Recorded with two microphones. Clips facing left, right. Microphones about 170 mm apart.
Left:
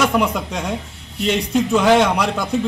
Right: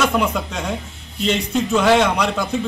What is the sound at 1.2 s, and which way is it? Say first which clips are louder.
A man's voice: left 2 dB; 15° left (ahead or behind).